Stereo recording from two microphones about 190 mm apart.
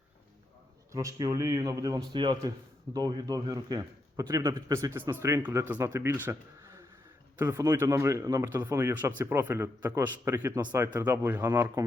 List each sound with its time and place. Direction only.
0.9 s speech: 15° right (ahead or behind)